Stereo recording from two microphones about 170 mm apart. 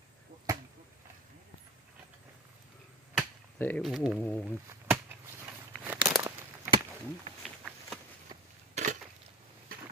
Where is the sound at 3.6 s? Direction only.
10° left (ahead or behind).